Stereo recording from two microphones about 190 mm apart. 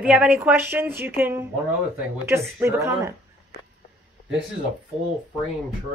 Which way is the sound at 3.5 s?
60° left (ahead or behind).